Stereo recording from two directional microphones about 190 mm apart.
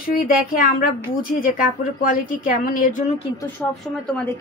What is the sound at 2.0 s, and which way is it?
A woman's voice, 45° left (ahead or behind).